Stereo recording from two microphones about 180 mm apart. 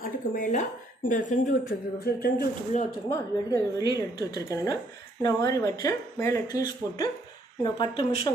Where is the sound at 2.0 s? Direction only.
55° left (ahead or behind).